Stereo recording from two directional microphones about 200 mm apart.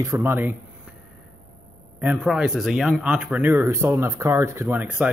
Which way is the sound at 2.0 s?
5° right (ahead or behind).